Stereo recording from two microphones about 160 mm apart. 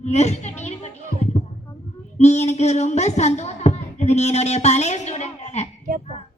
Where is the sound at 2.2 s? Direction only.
45° left (ahead or behind).